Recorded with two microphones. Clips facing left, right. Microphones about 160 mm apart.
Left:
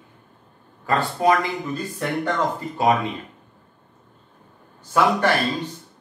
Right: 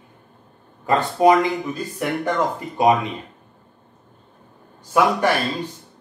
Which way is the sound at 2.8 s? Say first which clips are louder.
Right 3 dB; 15° right (ahead or behind).